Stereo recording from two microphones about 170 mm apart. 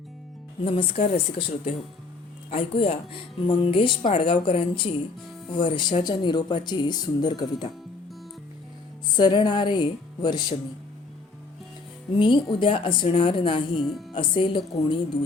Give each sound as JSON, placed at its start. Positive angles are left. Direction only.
{"t": 0.6, "sound": "speech", "side_deg": 30}
{"t": 9.1, "sound": "speech", "side_deg": 25}
{"t": 12.2, "sound": "speech", "side_deg": 30}
{"t": 13.7, "sound": "speech", "side_deg": 0}
{"t": 14.1, "sound": "speech", "side_deg": 30}